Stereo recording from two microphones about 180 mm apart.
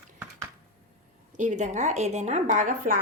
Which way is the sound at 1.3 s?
45° right (ahead or behind).